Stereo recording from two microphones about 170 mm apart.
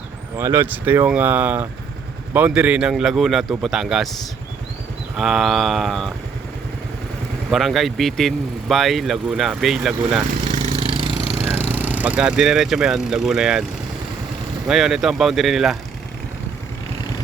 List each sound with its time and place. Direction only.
0.3 s speech: 15° right (ahead or behind)
5.1 s speech: centre (ahead or behind)
7.5 s speech: centre (ahead or behind)
10.5 s a sound: 40° right (ahead or behind)
11.3 s speech: 15° right (ahead or behind)
14.7 s speech: 5° right (ahead or behind)